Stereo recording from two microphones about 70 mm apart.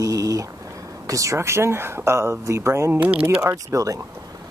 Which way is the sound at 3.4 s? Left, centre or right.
Right.